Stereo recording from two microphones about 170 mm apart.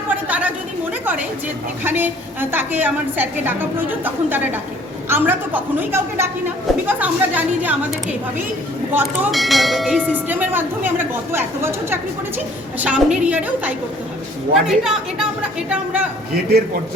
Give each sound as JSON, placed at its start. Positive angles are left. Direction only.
{"t": 0.1, "sound": "a sound", "side_deg": -10}
{"t": 1.8, "sound": "a woman's voice", "side_deg": -10}
{"t": 9.3, "sound": "a woman's voice", "side_deg": 0}
{"t": 16.3, "sound": "a man's voice", "side_deg": -65}